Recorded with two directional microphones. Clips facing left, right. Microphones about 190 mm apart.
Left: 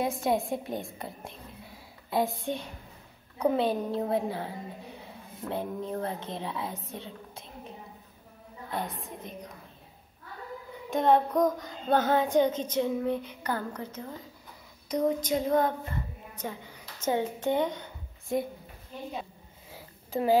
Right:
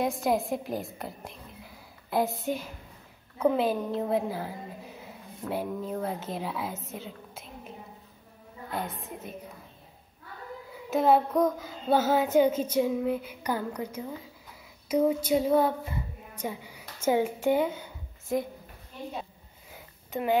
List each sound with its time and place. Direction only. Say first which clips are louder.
0.0 s a woman's voice: right 1 dB; centre (ahead or behind)
8.7 s a woman's voice: even; centre (ahead or behind)
10.7 s child singing: right 1 dB; 5° right (ahead or behind)
14.9 s a woman's voice: right 3 dB; 10° right (ahead or behind)
19.7 s sniff: left 2 dB; 30° left (ahead or behind)